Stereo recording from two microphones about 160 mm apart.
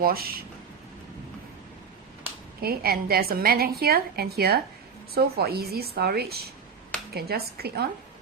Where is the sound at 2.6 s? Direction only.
75° right (ahead or behind).